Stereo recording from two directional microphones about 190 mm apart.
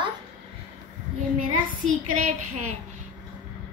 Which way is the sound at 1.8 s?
40° right (ahead or behind).